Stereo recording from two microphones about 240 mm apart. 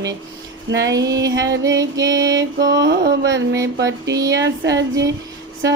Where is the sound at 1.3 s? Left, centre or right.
Right.